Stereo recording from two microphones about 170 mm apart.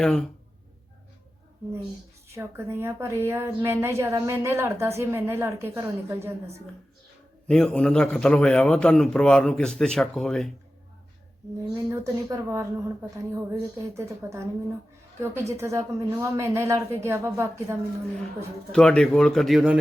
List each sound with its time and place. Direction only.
0.0 s a man's voice: 5° left (ahead or behind)
2.3 s a woman's voice: 15° right (ahead or behind)
7.4 s a man's voice: 5° left (ahead or behind)
11.9 s a woman's voice: 15° right (ahead or behind)
18.7 s a man's voice: 5° left (ahead or behind)